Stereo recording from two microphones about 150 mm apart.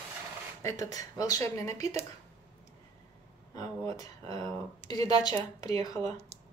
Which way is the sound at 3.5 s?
25° left (ahead or behind).